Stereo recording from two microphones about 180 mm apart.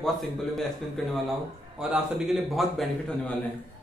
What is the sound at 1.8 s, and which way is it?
Speech, 5° right (ahead or behind).